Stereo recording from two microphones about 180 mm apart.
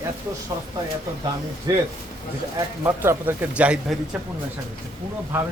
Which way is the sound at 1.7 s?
20° right (ahead or behind).